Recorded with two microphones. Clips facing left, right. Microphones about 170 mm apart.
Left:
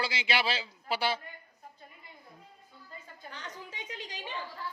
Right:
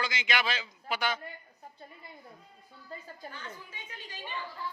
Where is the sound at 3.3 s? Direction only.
85° left.